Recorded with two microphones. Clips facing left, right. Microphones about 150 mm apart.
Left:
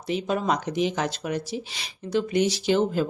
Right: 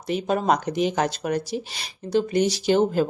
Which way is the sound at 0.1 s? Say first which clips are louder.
Right 3 dB; 45° right (ahead or behind).